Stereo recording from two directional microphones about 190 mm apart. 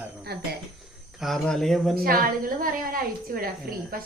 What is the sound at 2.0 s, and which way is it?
A woman's voice, 50° right (ahead or behind).